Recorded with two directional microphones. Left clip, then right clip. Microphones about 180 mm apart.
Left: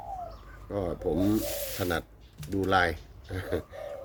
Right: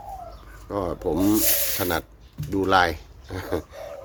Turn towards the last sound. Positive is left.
turn(degrees=10)  # may be behind; listen again after turning